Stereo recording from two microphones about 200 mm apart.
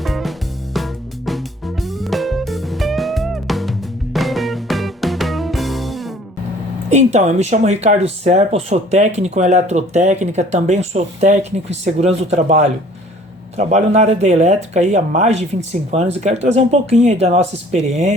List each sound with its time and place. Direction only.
0.0 s music: centre (ahead or behind)
6.9 s speech: 35° right (ahead or behind)